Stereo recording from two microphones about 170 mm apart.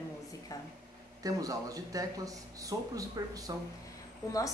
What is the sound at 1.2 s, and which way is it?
Speech, 20° right (ahead or behind).